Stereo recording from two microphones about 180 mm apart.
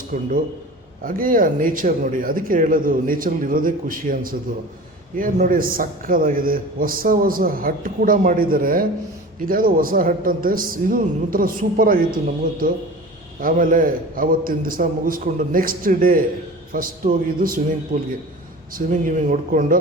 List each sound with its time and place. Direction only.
0.1 s a man's voice: 45° right (ahead or behind); by 18.1 s 60° right (ahead or behind)
18.7 s a man's voice: 45° right (ahead or behind)